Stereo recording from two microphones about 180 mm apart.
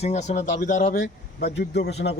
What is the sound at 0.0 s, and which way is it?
Speech, 40° left (ahead or behind).